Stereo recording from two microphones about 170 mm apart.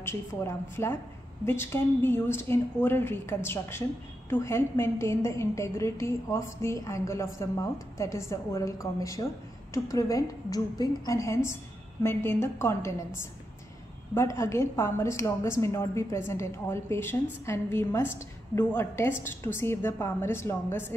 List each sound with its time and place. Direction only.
0.0 s a woman's voice: 15° left (ahead or behind)